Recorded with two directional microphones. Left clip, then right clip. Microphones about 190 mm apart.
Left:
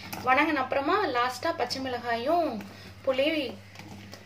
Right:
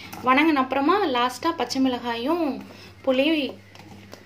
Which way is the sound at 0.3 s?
45° right (ahead or behind).